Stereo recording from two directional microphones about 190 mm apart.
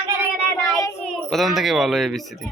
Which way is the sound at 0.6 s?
15° left (ahead or behind).